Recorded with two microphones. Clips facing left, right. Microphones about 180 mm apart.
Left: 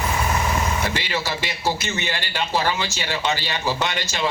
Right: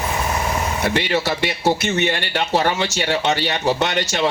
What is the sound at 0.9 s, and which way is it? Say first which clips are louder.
Speech: right 6 dB; 60° right (ahead or behind).